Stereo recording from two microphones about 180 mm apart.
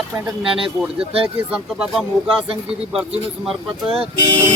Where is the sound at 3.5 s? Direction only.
Centre (ahead or behind).